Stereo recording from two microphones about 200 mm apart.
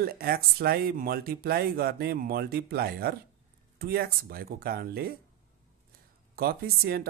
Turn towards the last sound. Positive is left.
turn(degrees=-50)  # may be behind; listen again after turning